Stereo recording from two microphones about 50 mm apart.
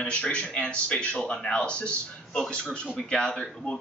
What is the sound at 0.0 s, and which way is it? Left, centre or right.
Speech, left.